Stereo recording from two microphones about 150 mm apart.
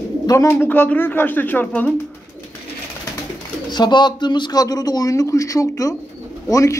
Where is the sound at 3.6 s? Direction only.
30° left (ahead or behind).